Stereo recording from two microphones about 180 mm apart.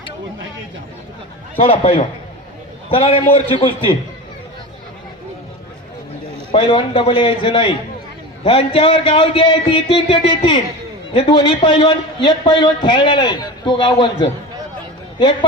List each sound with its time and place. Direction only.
1.5 s speech: 30° left (ahead or behind)
6.5 s a man's voice: 30° left (ahead or behind)